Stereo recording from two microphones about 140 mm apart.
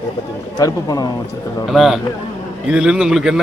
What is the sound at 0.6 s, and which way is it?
Speech, 25° left (ahead or behind).